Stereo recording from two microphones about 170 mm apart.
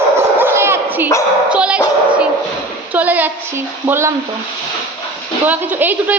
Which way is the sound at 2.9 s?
10° right (ahead or behind).